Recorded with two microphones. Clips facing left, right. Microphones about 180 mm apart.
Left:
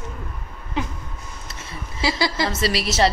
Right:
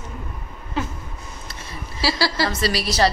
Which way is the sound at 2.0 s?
20° left (ahead or behind).